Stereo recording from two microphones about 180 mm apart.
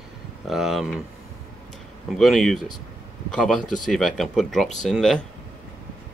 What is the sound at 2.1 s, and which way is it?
Speech, centre (ahead or behind).